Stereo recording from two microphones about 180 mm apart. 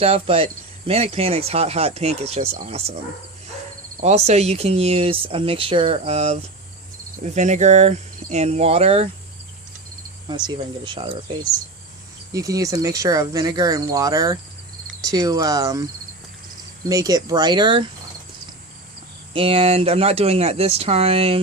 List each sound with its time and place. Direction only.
0.0 s speech: 35° right (ahead or behind)
4.0 s speech: 35° right (ahead or behind)
10.2 s speech: 25° right (ahead or behind)
12.3 s speech: 20° right (ahead or behind)
16.9 s speech: 20° right (ahead or behind)
19.3 s speech: 30° right (ahead or behind)